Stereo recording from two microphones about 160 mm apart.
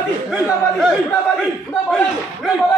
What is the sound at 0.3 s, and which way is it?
A man's voice, centre (ahead or behind).